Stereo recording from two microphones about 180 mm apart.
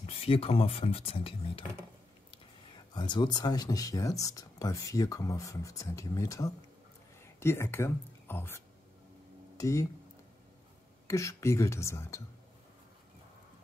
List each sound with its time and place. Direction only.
0.0 s speech: 35° left (ahead or behind); by 9.8 s 15° left (ahead or behind)
11.1 s speech: 15° left (ahead or behind)